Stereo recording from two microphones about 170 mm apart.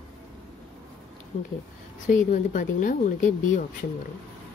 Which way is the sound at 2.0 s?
50° left (ahead or behind).